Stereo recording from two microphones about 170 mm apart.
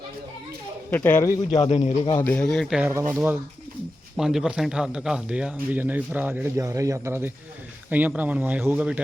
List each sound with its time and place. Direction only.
0.9 s speech: 10° left (ahead or behind)
1.7 s a man's voice: 40° left (ahead or behind)
2.2 s speech: 10° left (ahead or behind); by 9.0 s 10° right (ahead or behind)